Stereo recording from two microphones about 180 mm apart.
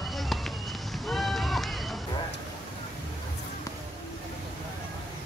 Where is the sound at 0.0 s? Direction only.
Centre (ahead or behind).